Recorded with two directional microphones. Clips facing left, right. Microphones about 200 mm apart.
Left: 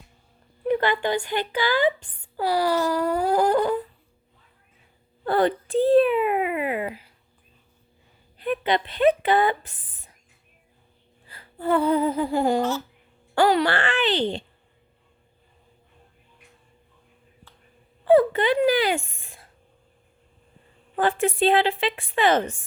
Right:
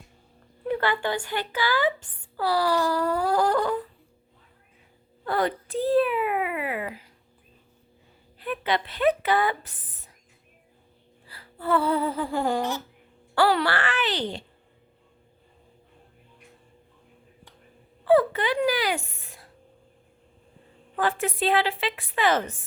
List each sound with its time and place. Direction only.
0.6 s a woman's voice: 20° left (ahead or behind)
2.8 s a sound: 10° left (ahead or behind)
5.2 s a sound: 30° left (ahead or behind)
8.4 s a woman's voice: 20° left (ahead or behind)
11.3 s music: 25° left (ahead or behind)
13.3 s a woman's voice: 20° left (ahead or behind)
18.0 s speech: 25° left (ahead or behind)
20.9 s a woman's voice: 30° left (ahead or behind)